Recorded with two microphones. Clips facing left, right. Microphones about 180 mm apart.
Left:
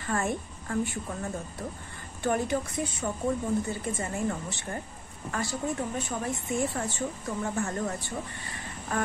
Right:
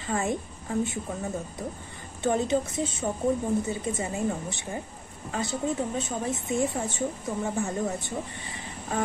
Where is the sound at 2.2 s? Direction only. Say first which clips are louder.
Right 3 dB; 20° right (ahead or behind).